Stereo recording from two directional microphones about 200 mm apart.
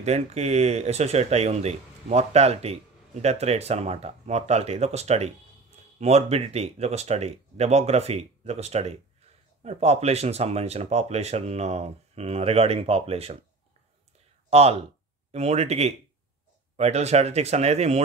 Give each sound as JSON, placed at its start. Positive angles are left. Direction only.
{"t": 0.0, "sound": "speech", "side_deg": -35}
{"t": 14.5, "sound": "speech", "side_deg": -30}